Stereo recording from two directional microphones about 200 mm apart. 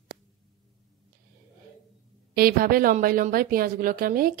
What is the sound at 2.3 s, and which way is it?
Speech, 45° right (ahead or behind).